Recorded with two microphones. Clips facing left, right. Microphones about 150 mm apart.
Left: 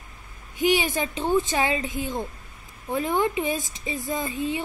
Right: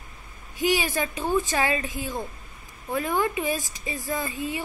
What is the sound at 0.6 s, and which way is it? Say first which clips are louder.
Speech: left 2 dB; 20° left (ahead or behind).